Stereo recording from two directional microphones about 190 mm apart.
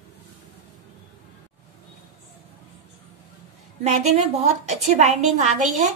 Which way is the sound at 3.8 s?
35° right (ahead or behind).